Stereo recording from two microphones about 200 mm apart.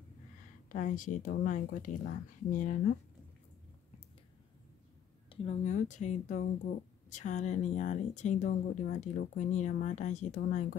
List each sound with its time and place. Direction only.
0.7 s a woman's voice: 40° left (ahead or behind)
5.3 s a woman's voice: 30° left (ahead or behind)